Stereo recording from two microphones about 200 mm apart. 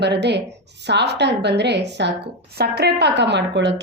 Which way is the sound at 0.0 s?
60° right (ahead or behind).